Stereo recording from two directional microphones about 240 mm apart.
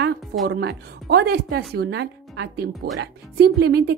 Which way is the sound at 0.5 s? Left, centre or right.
Right.